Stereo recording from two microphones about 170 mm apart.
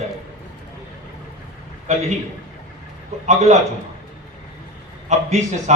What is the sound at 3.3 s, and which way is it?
Speech, 45° right (ahead or behind).